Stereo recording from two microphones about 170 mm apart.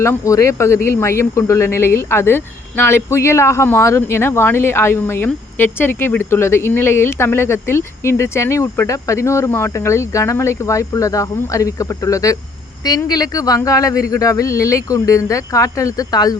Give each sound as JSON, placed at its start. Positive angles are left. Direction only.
{"t": 0.0, "sound": "speech", "side_deg": 15}